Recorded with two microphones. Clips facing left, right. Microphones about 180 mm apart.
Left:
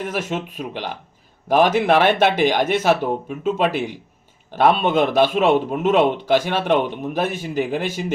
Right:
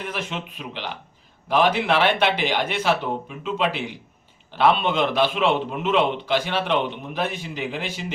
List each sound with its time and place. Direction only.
0.0 s a man's voice: 45° left (ahead or behind)